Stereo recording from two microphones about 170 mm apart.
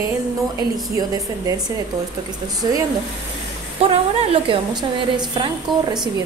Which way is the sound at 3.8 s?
35° right (ahead or behind).